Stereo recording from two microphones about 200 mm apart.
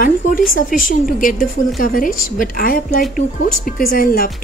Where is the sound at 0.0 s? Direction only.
45° left (ahead or behind).